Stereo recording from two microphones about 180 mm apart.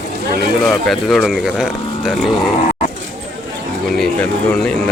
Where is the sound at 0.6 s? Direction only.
Centre (ahead or behind).